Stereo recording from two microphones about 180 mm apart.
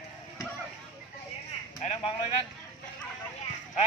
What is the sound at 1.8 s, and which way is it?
Speech, 35° left (ahead or behind).